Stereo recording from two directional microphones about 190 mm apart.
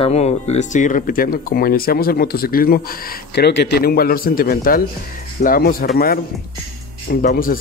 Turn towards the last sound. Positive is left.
turn(degrees=45)  # may be behind; listen again after turning